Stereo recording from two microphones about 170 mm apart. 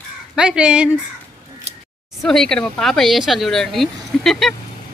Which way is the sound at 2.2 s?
Centre (ahead or behind).